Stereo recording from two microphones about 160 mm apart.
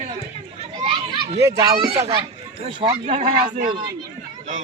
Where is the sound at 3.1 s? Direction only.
50° right (ahead or behind).